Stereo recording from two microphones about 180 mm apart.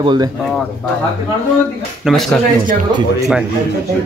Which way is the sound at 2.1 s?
Centre (ahead or behind).